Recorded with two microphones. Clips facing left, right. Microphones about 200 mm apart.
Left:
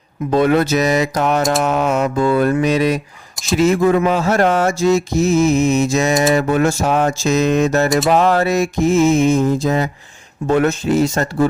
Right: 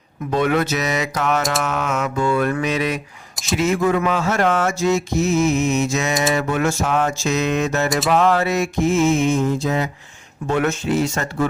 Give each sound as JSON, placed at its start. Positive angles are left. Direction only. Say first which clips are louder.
{"t": 0.3, "sound": "mantra", "louder": "left 5 dB", "side_deg": 35}